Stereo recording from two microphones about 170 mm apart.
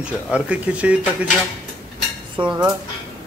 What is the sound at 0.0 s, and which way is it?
Speech, 5° right (ahead or behind).